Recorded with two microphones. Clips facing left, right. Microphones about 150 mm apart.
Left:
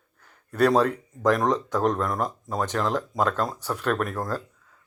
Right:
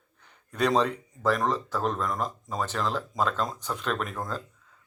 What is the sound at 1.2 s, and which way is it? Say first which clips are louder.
Speech: left 4 dB; 15° left (ahead or behind).